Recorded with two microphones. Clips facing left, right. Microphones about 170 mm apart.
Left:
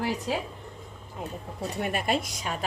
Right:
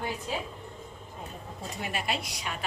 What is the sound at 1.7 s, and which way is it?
Speech, 50° left (ahead or behind).